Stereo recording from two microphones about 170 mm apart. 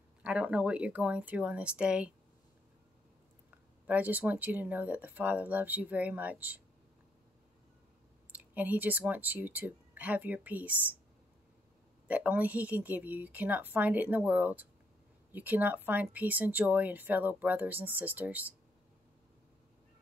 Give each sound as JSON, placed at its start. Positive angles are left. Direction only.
{"t": 0.2, "sound": "speech", "side_deg": -5}
{"t": 3.8, "sound": "speech", "side_deg": -10}
{"t": 8.3, "sound": "speech", "side_deg": -10}
{"t": 12.1, "sound": "speech", "side_deg": -10}